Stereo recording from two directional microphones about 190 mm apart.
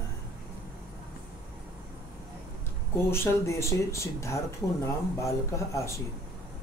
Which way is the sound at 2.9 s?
15° left (ahead or behind).